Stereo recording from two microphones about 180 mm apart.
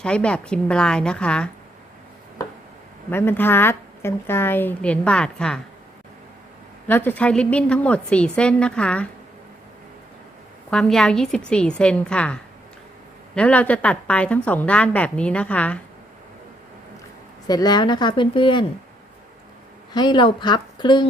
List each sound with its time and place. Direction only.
0.0 s a woman's voice: 5° left (ahead or behind)
3.1 s speech: 10° left (ahead or behind)
6.8 s speech: 10° left (ahead or behind)
10.7 s a woman's voice: 5° left (ahead or behind)
17.5 s speech: 20° left (ahead or behind)
19.9 s speech: 25° left (ahead or behind)